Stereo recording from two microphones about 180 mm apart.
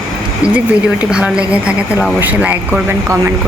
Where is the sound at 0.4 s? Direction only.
5° right (ahead or behind).